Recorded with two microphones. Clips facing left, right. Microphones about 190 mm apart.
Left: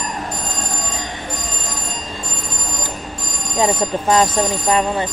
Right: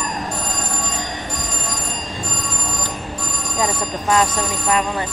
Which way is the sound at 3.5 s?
20° left (ahead or behind).